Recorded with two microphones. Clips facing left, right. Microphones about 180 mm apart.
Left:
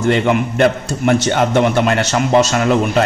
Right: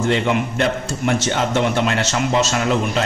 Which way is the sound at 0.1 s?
55° left (ahead or behind).